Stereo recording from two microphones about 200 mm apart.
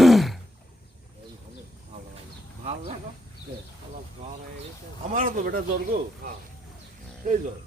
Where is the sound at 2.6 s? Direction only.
30° right (ahead or behind).